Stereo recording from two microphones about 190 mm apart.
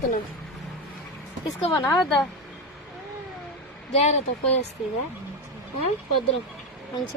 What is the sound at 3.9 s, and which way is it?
Speech, 35° left (ahead or behind).